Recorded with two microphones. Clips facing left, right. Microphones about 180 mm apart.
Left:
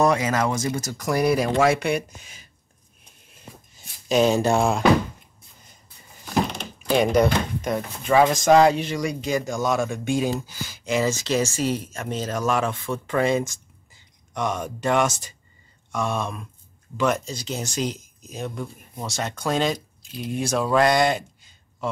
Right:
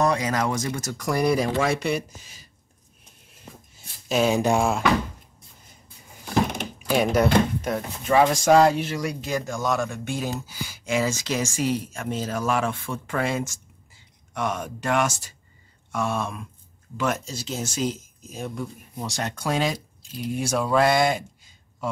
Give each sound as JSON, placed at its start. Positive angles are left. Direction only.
{"t": 0.0, "sound": "speech", "side_deg": 5}
{"t": 1.6, "sound": "speech", "side_deg": 60}
{"t": 4.1, "sound": "speech", "side_deg": -10}
{"t": 6.2, "sound": "speech", "side_deg": -15}
{"t": 14.3, "sound": "speech", "side_deg": -5}